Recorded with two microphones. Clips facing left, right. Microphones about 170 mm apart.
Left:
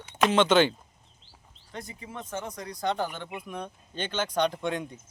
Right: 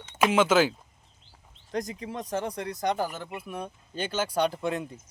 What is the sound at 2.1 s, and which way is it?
Speech, 35° right (ahead or behind).